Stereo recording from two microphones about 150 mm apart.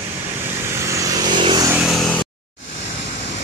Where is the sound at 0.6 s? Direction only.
20° right (ahead or behind).